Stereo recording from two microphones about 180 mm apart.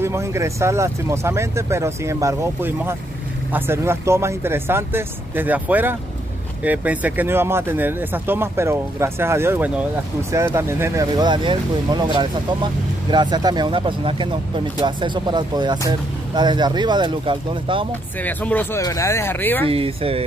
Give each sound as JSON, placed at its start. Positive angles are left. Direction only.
{"t": 0.0, "sound": "speech", "side_deg": -15}
{"t": 18.2, "sound": "speech", "side_deg": 10}
{"t": 19.7, "sound": "speech", "side_deg": -30}